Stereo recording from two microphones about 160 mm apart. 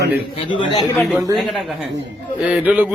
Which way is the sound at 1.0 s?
Centre (ahead or behind).